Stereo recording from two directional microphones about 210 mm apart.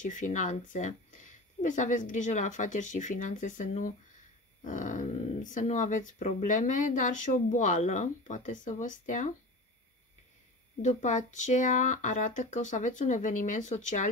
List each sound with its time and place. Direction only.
0.0 s speech: 35° left (ahead or behind)
10.8 s speech: 35° left (ahead or behind)